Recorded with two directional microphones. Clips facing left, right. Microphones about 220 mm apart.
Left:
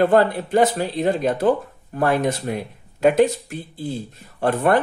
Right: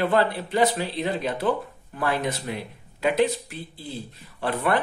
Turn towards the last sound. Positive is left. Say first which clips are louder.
# left 6 dB
turn(degrees=45)  # may be behind; listen again after turning